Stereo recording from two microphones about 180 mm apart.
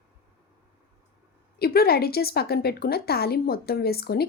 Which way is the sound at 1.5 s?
60° left (ahead or behind).